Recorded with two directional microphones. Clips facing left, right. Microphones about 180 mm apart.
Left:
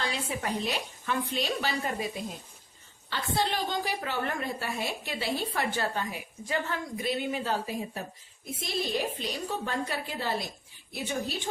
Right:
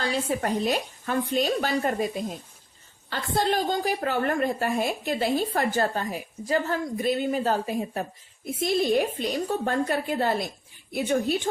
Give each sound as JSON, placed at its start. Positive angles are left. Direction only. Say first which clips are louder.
{"t": 0.0, "sound": "a woman's voice", "louder": "right 6 dB", "side_deg": -40}
{"t": 3.1, "sound": "a woman's voice", "louder": "right 5 dB", "side_deg": -45}